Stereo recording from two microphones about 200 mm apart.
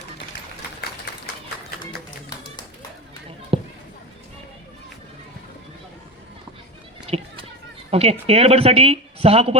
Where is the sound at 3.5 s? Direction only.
30° right (ahead or behind).